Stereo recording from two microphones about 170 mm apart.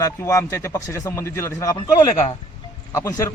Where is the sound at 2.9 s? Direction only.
15° left (ahead or behind).